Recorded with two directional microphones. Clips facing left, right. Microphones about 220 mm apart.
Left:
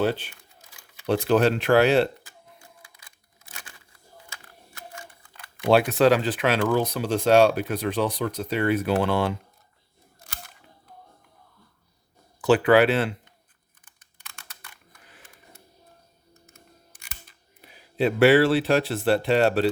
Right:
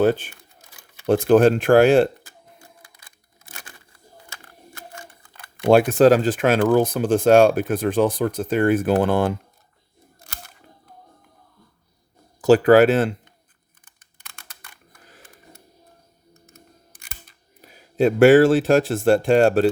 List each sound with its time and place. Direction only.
0.0 s speech: 50° right (ahead or behind)
1.0 s a sound: 50° right (ahead or behind)
4.3 s speech: 40° right (ahead or behind)
12.4 s speech: 40° right (ahead or behind)
17.6 s speech: 45° right (ahead or behind)